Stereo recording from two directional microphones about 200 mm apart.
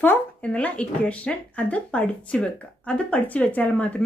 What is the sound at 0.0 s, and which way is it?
Speech, 10° left (ahead or behind).